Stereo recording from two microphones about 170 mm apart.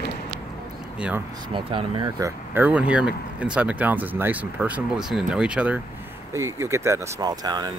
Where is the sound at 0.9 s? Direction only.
5° right (ahead or behind).